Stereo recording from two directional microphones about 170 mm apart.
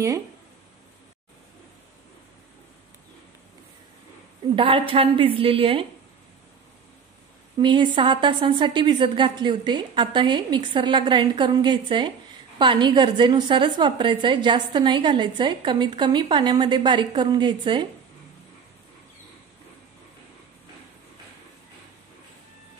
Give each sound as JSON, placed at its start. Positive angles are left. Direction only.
{"t": 4.6, "sound": "a woman's voice", "side_deg": -30}
{"t": 7.5, "sound": "a woman's voice", "side_deg": -30}